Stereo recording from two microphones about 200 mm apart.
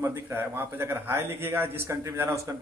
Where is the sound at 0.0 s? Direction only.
10° right (ahead or behind).